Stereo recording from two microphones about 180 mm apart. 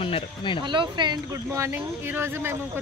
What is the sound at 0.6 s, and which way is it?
Speech, 25° right (ahead or behind).